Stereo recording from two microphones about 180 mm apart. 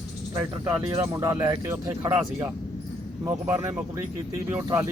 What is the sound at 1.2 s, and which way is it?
Speech, 15° right (ahead or behind).